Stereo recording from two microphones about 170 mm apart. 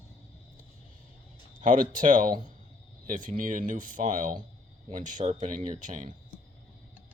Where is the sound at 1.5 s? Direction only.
50° right (ahead or behind).